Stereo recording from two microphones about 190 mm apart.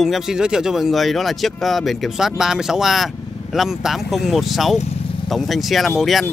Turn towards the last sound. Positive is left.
turn(degrees=0)  # may be behind; listen again after turning